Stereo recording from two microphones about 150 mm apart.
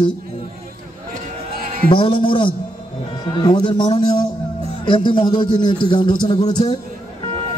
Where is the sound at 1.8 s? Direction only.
35° left (ahead or behind).